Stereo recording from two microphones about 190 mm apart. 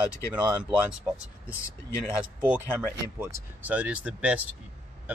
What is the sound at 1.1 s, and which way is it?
Speech, 5° left (ahead or behind).